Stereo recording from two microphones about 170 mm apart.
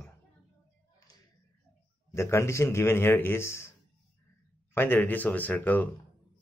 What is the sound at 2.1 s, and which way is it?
Speech, 15° left (ahead or behind).